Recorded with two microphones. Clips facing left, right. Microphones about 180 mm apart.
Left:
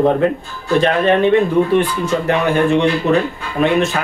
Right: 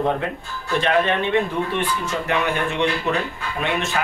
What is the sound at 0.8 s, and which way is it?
Speech, 40° left (ahead or behind).